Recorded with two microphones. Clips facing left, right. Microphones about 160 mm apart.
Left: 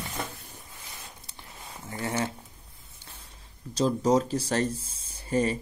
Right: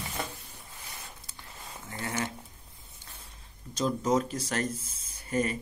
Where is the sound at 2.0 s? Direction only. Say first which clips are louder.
Left 4 dB; 25° left (ahead or behind).